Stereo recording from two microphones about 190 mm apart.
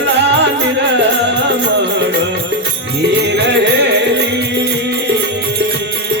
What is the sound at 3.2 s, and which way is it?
Music, 65° right (ahead or behind).